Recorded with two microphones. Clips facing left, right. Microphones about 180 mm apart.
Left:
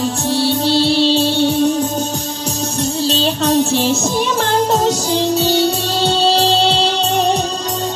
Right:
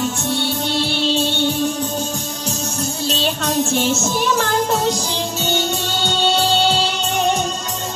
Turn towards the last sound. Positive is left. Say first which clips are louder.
# left 3 dB
turn(degrees=35)  # may be behind; listen again after turning